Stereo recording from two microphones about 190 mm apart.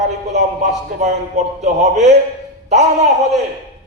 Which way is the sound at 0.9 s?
40° right (ahead or behind).